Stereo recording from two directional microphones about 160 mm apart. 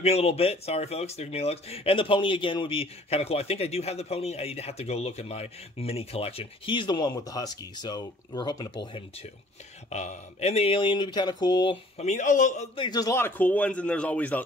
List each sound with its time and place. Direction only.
0.0 s speech: 40° left (ahead or behind)
9.8 s speech: 45° left (ahead or behind); by 11.8 s 30° left (ahead or behind)
12.0 s a man's voice: 50° left (ahead or behind)
12.7 s a man's voice: 30° left (ahead or behind); by 14.4 s 10° left (ahead or behind)